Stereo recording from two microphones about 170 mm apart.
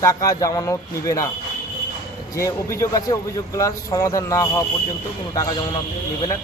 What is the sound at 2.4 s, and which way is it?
A man's voice, 20° left (ahead or behind).